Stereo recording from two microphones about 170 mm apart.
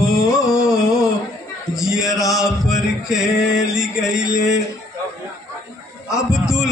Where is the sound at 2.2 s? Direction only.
Centre (ahead or behind).